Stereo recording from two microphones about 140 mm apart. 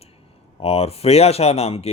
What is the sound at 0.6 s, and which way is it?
Speech, 45° left (ahead or behind).